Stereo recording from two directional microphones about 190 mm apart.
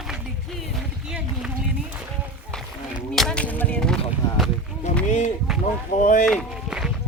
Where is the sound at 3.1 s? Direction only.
5° left (ahead or behind).